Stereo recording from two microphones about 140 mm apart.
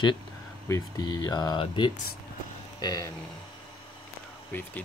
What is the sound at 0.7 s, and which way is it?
Speech, 25° left (ahead or behind).